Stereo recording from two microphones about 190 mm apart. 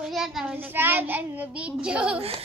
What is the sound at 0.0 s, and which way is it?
Child singing, centre (ahead or behind).